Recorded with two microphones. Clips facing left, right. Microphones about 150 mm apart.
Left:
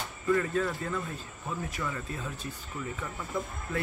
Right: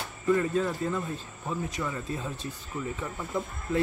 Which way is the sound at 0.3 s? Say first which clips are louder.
Right 2 dB; 20° right (ahead or behind).